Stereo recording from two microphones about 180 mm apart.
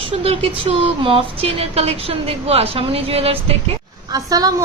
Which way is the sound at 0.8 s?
30° right (ahead or behind).